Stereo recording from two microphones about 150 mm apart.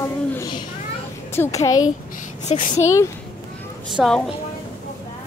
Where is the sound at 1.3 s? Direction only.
20° left (ahead or behind).